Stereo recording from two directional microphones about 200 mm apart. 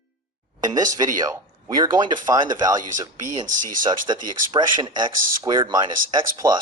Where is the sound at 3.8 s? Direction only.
20° right (ahead or behind).